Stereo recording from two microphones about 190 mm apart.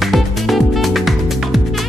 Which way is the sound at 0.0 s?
Centre (ahead or behind).